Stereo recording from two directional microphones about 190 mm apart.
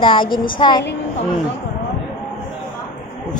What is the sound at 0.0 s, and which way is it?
Child singing, 25° left (ahead or behind).